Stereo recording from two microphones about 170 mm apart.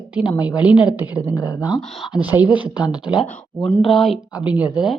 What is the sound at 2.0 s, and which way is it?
Speech, 5° right (ahead or behind).